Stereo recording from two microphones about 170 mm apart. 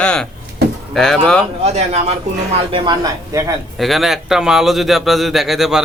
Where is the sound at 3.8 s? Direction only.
Centre (ahead or behind).